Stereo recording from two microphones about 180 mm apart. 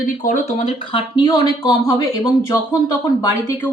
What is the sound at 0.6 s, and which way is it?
A woman's voice, 30° left (ahead or behind).